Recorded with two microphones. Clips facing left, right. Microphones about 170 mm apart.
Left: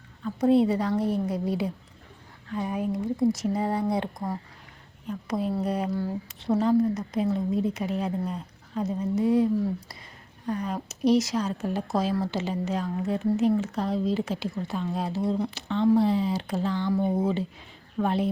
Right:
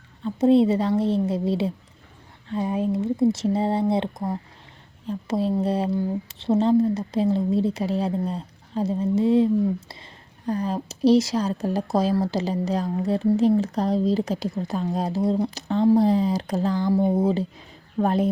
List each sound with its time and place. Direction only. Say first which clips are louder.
0.2 s a woman's voice: right 4 dB; 25° right (ahead or behind); by 18.3 s 40° right (ahead or behind)